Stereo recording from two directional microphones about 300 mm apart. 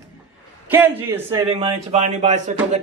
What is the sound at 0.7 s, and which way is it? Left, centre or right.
Speech, centre.